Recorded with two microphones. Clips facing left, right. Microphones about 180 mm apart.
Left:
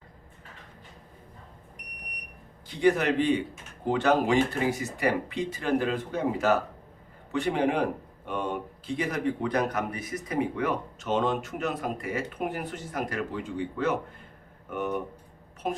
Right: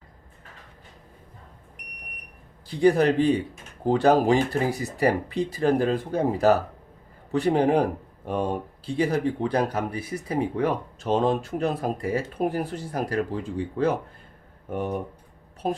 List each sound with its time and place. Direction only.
2.6 s speech: 35° right (ahead or behind)